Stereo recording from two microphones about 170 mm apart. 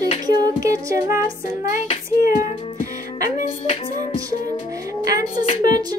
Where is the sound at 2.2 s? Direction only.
50° left (ahead or behind).